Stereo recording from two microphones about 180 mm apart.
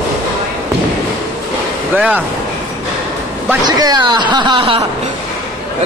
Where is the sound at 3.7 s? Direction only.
20° right (ahead or behind).